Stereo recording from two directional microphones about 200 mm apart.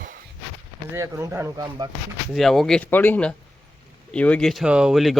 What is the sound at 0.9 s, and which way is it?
Speech, 15° right (ahead or behind).